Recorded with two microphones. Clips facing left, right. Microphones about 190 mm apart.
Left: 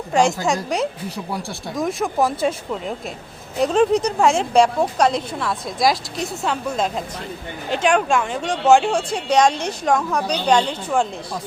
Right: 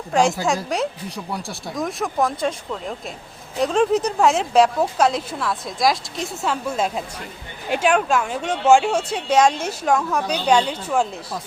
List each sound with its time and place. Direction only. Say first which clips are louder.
0.1 s speech: left 1 dB; centre (ahead or behind)
3.6 s speech: left 2 dB; centre (ahead or behind)